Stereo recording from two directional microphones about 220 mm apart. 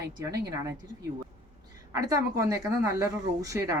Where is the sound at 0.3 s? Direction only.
15° right (ahead or behind).